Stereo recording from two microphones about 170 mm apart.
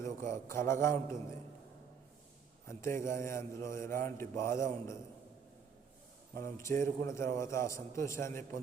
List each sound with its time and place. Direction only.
0.0 s mantra: 15° left (ahead or behind)
2.6 s mantra: 15° left (ahead or behind)
6.3 s mantra: 15° left (ahead or behind)